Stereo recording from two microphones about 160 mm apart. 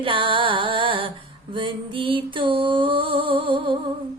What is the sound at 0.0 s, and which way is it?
Music, 30° right (ahead or behind).